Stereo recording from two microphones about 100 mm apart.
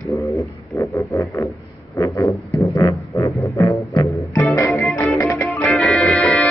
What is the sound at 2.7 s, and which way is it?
Music, 30° left (ahead or behind).